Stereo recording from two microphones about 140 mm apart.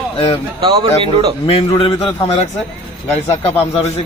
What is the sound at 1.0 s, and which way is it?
A man's voice, 45° left (ahead or behind).